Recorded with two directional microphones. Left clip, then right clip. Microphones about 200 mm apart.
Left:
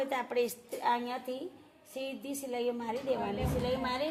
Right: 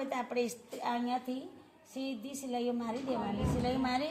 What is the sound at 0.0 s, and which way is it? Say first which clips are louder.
A woman's voice: left 3 dB; 40° left (ahead or behind).